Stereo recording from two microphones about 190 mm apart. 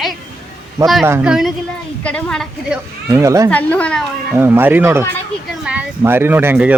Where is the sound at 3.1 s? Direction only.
15° right (ahead or behind).